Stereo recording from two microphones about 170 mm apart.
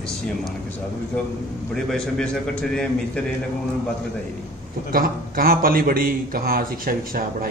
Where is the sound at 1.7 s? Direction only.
5° left (ahead or behind).